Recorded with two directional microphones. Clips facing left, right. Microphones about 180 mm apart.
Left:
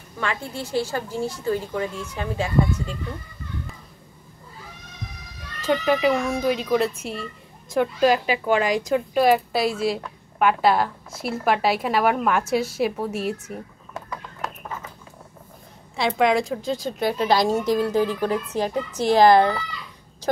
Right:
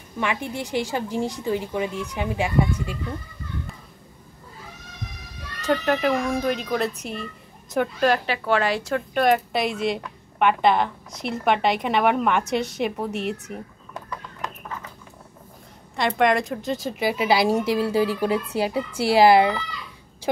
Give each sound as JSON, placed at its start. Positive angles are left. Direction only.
{"t": 0.2, "sound": "speech", "side_deg": -15}
{"t": 5.7, "sound": "a woman's voice", "side_deg": 0}
{"t": 16.0, "sound": "a woman's voice", "side_deg": 0}